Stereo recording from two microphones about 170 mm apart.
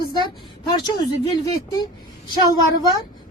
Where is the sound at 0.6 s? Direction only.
25° left (ahead or behind).